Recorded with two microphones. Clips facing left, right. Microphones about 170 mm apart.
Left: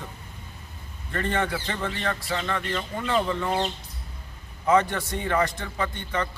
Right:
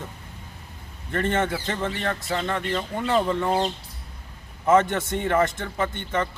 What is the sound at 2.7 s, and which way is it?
Speech, 35° right (ahead or behind).